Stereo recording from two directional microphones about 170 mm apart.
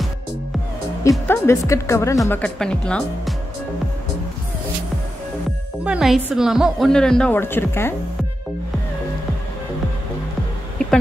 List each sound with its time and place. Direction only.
1.2 s speech: 15° left (ahead or behind)
5.9 s a woman's voice: centre (ahead or behind); by 7.9 s 15° left (ahead or behind)